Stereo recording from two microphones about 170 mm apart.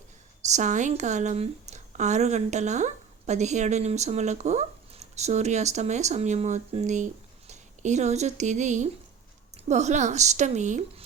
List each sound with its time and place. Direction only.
0.4 s a woman's voice: 45° right (ahead or behind)